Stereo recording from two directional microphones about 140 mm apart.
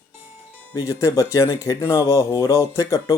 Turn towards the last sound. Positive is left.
turn(degrees=20)  # may be behind; listen again after turning